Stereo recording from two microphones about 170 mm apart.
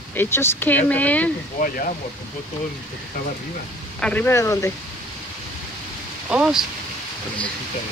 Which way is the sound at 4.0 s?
10° left (ahead or behind).